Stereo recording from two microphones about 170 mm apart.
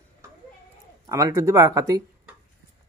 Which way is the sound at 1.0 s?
20° right (ahead or behind).